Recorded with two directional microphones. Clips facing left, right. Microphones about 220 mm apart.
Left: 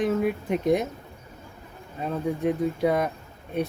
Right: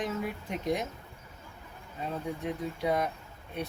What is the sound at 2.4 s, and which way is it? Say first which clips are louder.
Speech: left 9 dB; 55° left (ahead or behind).